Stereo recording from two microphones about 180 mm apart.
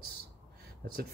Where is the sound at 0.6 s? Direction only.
55° right (ahead or behind).